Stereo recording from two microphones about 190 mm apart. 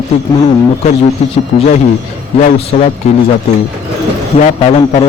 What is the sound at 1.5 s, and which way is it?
Speech, 35° left (ahead or behind).